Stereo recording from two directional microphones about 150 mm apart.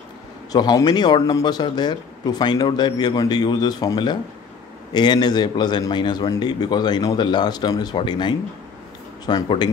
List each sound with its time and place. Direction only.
0.5 s speech: 25° left (ahead or behind)